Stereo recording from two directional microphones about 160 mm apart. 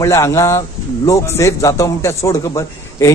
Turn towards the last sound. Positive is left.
turn(degrees=20)  # may be behind; listen again after turning